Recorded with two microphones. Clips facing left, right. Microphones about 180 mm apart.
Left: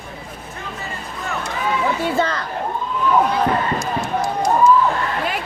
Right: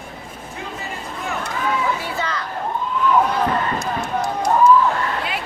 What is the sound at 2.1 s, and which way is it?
Speech, 50° left (ahead or behind).